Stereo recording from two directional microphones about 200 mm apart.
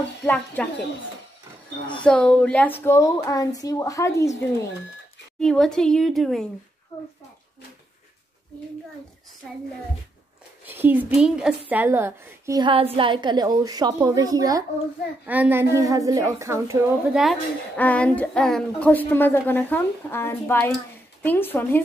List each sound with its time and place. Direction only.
0.2 s a woman's voice: 5° left (ahead or behind)
2.0 s a woman's voice: 5° left (ahead or behind)
5.4 s a woman's voice: 5° left (ahead or behind)
10.6 s a woman's voice: 10° right (ahead or behind)
17.2 s a woman's voice: 5° left (ahead or behind)